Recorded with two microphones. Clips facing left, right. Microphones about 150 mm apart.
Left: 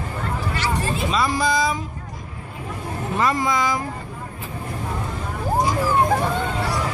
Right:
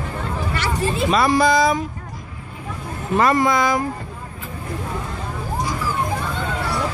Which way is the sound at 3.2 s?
60° right (ahead or behind).